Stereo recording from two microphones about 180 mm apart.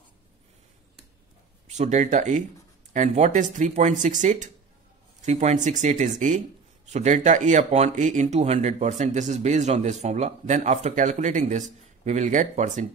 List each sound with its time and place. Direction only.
1.7 s speech: 40° right (ahead or behind)